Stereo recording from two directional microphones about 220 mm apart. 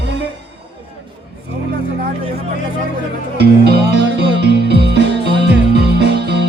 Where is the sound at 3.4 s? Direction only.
50° right (ahead or behind).